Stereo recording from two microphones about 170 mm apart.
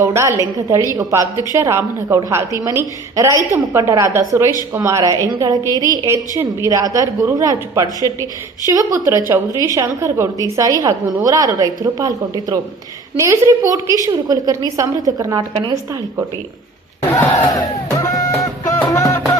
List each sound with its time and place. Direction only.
0.0 s a woman's voice: 15° right (ahead or behind)
9.5 s a woman's voice: 20° left (ahead or behind)
9.7 s a woman's voice: 15° right (ahead or behind)
13.1 s a woman's voice: 20° right (ahead or behind)
17.9 s music: 20° left (ahead or behind)